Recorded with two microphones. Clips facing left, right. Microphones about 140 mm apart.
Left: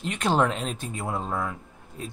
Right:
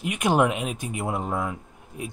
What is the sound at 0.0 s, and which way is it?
Speech, 10° right (ahead or behind).